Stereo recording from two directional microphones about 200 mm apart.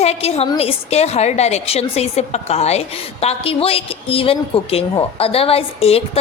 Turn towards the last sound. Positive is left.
turn(degrees=30)  # may be behind; listen again after turning